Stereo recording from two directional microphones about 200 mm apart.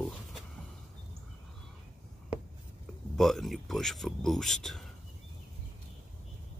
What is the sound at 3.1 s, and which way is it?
Speech, centre (ahead or behind).